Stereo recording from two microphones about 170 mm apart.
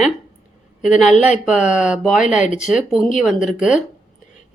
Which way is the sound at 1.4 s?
5° right (ahead or behind).